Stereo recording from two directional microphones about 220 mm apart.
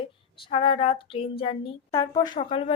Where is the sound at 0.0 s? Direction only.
25° left (ahead or behind).